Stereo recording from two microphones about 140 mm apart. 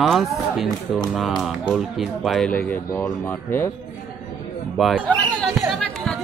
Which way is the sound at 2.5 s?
15° left (ahead or behind).